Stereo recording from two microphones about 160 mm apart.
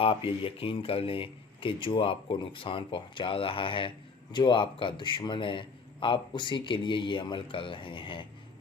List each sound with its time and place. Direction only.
0.3 s speech: 35° left (ahead or behind)